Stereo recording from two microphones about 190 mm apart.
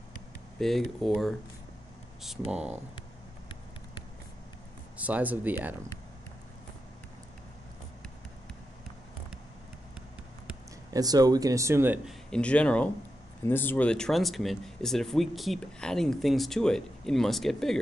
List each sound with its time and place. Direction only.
0.6 s speech: centre (ahead or behind)
4.9 s speech: 10° right (ahead or behind)
10.9 s speech: 20° right (ahead or behind)
12.3 s speech: 5° left (ahead or behind)